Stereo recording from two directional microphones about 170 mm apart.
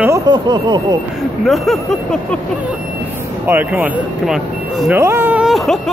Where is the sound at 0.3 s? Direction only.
25° right (ahead or behind).